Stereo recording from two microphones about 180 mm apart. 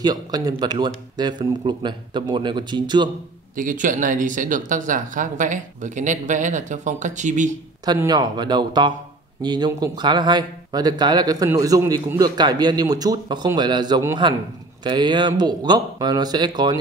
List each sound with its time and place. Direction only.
0.0 s speech: 20° right (ahead or behind)
3.5 s speech: 45° right (ahead or behind)
7.8 s speech: 20° right (ahead or behind)